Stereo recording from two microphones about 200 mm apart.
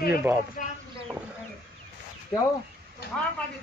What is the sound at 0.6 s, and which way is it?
Speech, 40° left (ahead or behind).